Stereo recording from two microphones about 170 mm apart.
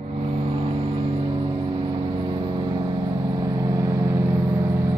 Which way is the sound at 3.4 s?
20° right (ahead or behind).